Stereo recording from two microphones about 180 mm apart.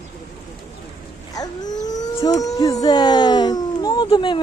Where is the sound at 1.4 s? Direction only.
20° left (ahead or behind).